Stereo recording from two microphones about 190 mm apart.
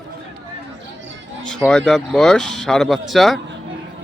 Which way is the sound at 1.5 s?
5° left (ahead or behind).